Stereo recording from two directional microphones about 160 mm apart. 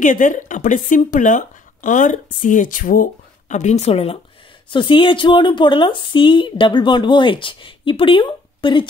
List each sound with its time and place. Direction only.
0.0 s speech: 55° left (ahead or behind); by 8.8 s 30° left (ahead or behind)